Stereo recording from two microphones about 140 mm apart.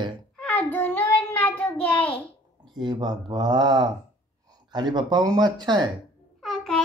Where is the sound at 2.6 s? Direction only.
30° right (ahead or behind).